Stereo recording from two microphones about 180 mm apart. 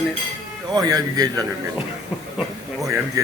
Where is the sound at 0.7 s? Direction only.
20° right (ahead or behind).